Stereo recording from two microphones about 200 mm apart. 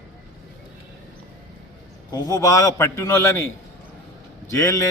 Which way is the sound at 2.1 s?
15° left (ahead or behind).